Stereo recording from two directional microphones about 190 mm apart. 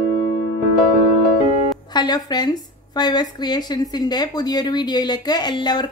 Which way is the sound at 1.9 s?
20° left (ahead or behind).